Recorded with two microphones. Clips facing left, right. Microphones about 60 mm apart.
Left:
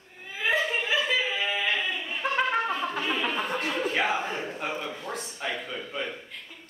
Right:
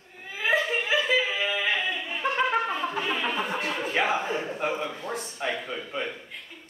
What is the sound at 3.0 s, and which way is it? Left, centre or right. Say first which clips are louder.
A man's voice: right 1 dB; centre.